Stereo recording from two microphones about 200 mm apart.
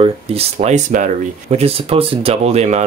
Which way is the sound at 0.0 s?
30° right (ahead or behind).